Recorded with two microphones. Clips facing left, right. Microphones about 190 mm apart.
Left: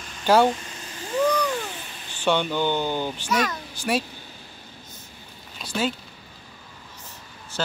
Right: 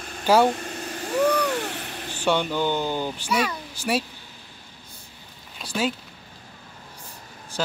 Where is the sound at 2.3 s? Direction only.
5° right (ahead or behind).